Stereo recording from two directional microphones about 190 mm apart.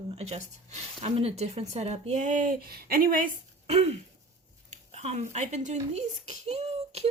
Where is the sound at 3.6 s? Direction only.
35° right (ahead or behind).